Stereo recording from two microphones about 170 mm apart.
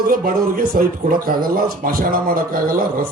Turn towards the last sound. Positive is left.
turn(degrees=-55)  # may be behind; listen again after turning